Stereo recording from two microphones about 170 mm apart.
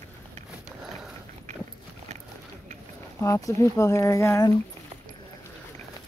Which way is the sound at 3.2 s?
20° left (ahead or behind).